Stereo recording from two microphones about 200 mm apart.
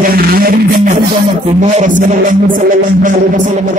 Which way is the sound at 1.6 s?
35° right (ahead or behind).